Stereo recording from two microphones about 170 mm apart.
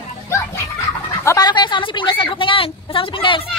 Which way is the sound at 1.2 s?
20° left (ahead or behind).